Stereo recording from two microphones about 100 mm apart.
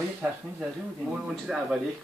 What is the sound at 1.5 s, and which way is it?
Speech, 10° right (ahead or behind).